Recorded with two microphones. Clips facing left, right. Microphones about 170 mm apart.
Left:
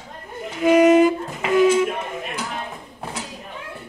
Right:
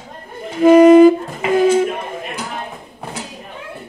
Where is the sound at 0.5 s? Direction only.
35° right (ahead or behind).